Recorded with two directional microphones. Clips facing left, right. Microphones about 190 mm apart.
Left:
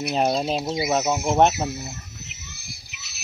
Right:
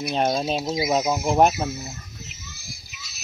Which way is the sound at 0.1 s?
5° left (ahead or behind).